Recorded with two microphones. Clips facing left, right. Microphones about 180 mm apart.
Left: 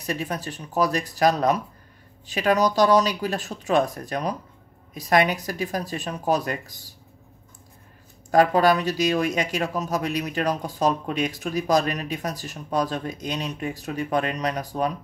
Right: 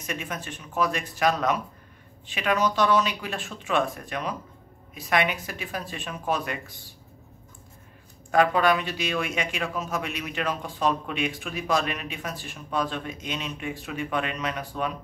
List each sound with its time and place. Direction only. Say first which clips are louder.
0.0 s speech: left 5 dB; 35° left (ahead or behind)
8.3 s speech: left 3 dB; 40° left (ahead or behind)